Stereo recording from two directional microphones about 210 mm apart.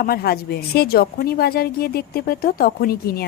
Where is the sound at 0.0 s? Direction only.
45° left (ahead or behind).